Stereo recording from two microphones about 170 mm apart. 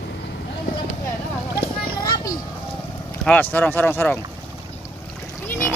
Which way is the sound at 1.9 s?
25° left (ahead or behind).